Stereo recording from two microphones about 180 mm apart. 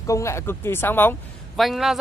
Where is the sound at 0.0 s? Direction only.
15° left (ahead or behind).